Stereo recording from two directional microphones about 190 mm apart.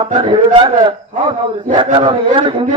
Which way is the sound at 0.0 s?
25° right (ahead or behind).